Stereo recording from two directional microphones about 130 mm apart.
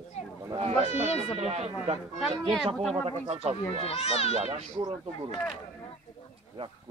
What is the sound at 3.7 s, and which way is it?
Speech, 50° left (ahead or behind).